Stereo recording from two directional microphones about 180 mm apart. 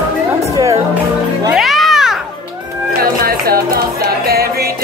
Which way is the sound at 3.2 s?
55° right (ahead or behind).